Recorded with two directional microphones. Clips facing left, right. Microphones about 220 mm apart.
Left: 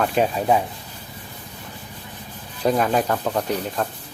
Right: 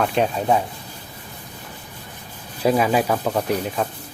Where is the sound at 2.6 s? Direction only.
5° right (ahead or behind).